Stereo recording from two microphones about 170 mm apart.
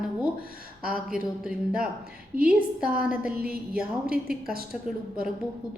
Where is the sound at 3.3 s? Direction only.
60° right (ahead or behind).